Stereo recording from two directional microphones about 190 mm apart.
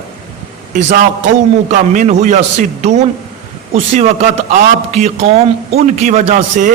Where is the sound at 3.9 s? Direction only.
35° right (ahead or behind).